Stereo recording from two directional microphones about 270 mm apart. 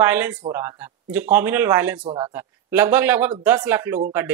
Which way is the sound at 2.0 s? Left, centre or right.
Centre.